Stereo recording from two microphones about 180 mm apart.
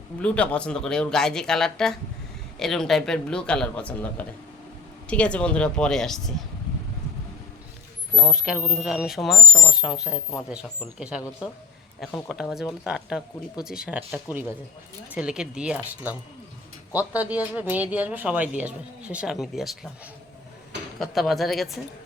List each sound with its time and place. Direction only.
0.2 s speech: 5° left (ahead or behind)
8.1 s speech: centre (ahead or behind)
21.0 s speech: centre (ahead or behind)